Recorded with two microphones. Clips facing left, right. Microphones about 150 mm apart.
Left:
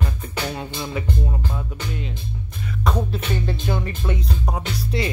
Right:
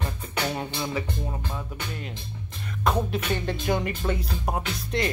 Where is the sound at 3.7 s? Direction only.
15° right (ahead or behind).